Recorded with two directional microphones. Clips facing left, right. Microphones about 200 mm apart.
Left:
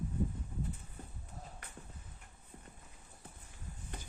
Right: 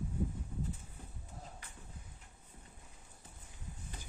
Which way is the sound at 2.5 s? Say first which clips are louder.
Left 6 dB; 50° left (ahead or behind).